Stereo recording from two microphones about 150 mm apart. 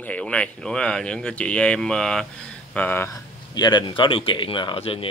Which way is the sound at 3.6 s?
30° left (ahead or behind).